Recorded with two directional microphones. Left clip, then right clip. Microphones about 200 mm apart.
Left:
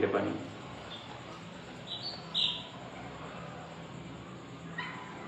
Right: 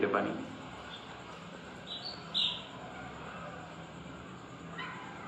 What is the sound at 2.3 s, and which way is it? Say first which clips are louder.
Bird: left 1 dB; centre (ahead or behind).